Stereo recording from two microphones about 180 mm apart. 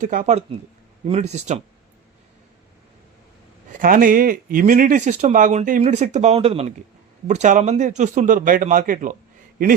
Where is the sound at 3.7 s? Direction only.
50° right (ahead or behind).